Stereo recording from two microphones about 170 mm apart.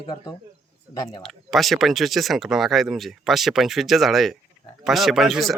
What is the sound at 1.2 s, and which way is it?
Speech, centre (ahead or behind).